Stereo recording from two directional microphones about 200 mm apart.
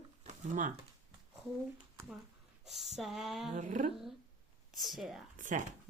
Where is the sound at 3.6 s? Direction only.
40° right (ahead or behind).